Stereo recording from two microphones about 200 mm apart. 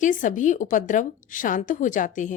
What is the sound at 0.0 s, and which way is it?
Speech, 40° left (ahead or behind).